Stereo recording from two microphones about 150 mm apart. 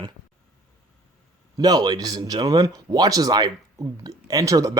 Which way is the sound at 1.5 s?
25° right (ahead or behind).